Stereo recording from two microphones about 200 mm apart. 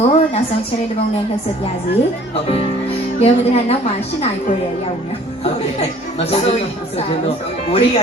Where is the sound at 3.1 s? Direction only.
30° left (ahead or behind).